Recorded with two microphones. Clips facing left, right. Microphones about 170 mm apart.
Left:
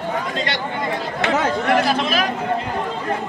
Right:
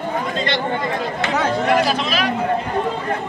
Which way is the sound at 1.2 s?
60° left (ahead or behind).